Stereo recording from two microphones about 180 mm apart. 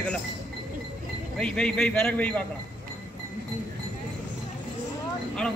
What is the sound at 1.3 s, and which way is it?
A man's voice, 5° left (ahead or behind).